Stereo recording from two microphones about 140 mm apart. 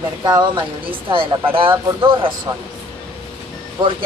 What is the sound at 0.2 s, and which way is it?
Speech, 30° right (ahead or behind).